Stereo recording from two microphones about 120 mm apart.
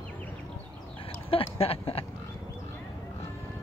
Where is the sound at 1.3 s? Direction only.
50° left (ahead or behind).